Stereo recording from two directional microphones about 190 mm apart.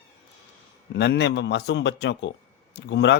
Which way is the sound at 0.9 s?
65° left (ahead or behind).